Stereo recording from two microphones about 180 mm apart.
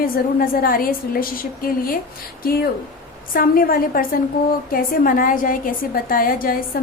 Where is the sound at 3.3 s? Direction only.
50° left (ahead or behind).